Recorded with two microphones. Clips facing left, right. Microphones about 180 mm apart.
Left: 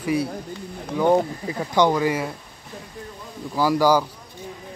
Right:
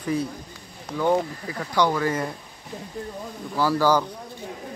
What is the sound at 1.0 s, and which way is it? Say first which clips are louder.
Speech: left 3 dB; 20° left (ahead or behind).